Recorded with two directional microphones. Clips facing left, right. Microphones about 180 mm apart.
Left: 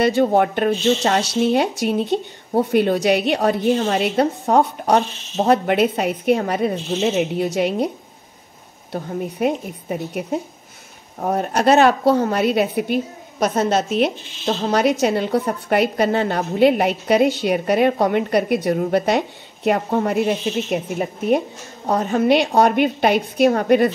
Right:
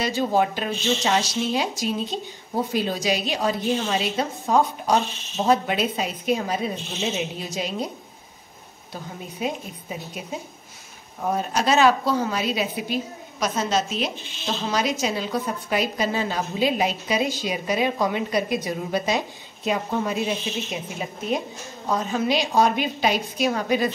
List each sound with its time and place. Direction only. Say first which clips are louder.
0.0 s a woman's voice: left 6 dB; 60° left (ahead or behind)
8.9 s a woman's voice: left 10 dB; 60° left (ahead or behind)